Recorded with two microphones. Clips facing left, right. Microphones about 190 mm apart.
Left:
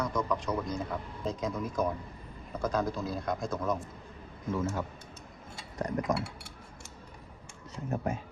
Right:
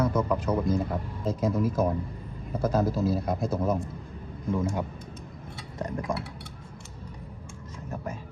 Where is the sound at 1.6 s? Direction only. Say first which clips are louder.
Right 6 dB; 5° right (ahead or behind).